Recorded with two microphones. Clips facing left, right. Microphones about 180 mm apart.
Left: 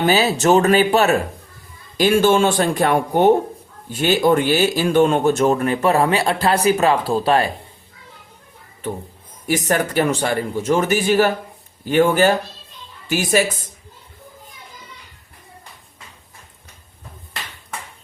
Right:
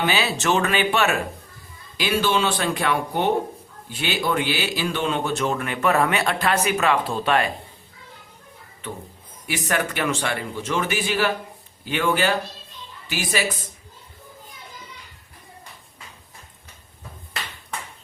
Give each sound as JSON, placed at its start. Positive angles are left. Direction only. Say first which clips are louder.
{"t": 0.0, "sound": "speech", "louder": "left 7 dB", "side_deg": 40}
{"t": 9.5, "sound": "speech", "louder": "left 6 dB", "side_deg": 40}